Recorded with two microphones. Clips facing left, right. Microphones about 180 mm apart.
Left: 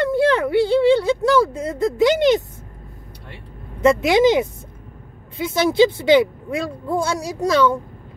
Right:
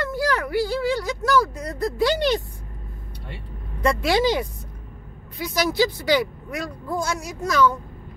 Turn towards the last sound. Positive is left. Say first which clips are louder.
# left 3 dB
turn(degrees=30)  # may be behind; listen again after turning